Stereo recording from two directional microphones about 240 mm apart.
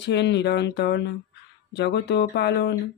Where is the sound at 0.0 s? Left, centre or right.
Left.